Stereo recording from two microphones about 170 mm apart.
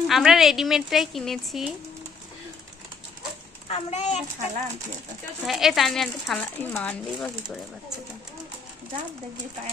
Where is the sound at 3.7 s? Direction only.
40° left (ahead or behind).